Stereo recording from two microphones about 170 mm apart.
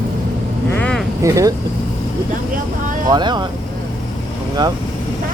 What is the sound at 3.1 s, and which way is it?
Speech, 25° right (ahead or behind).